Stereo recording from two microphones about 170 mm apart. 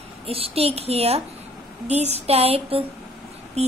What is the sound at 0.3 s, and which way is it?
A woman's voice, 35° right (ahead or behind).